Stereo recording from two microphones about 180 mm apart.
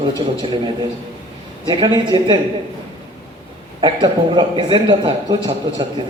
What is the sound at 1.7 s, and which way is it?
Speech, 25° right (ahead or behind).